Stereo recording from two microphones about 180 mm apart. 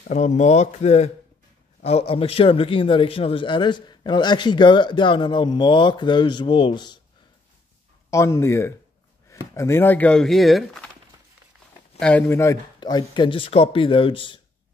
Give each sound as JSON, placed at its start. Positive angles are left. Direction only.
{"t": 0.1, "sound": "a man's voice", "side_deg": 40}
{"t": 8.1, "sound": "speech", "side_deg": 15}
{"t": 12.0, "sound": "a man's voice", "side_deg": 10}